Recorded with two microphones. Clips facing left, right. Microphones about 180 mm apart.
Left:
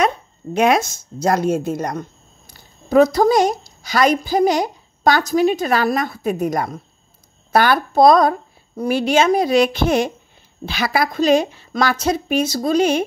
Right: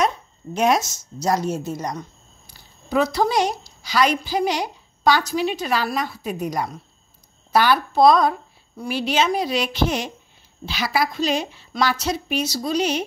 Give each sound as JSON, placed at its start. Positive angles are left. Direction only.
{"t": 0.0, "sound": "a woman's voice", "side_deg": 60}